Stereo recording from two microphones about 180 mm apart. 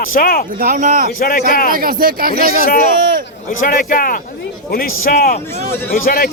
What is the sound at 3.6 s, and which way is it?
A man's voice, 50° left (ahead or behind).